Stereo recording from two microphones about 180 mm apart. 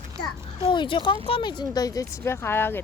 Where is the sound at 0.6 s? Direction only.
25° left (ahead or behind).